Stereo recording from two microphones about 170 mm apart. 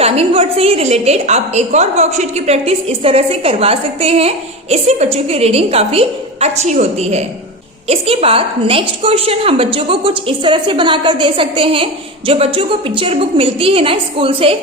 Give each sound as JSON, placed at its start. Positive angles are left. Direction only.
{"t": 0.0, "sound": "a woman's voice", "side_deg": -35}